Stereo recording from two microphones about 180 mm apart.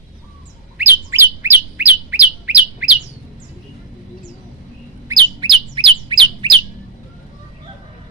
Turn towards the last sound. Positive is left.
turn(degrees=-25)  # may be behind; listen again after turning